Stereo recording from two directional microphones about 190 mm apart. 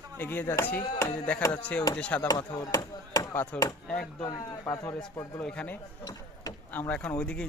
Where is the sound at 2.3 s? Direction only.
20° left (ahead or behind).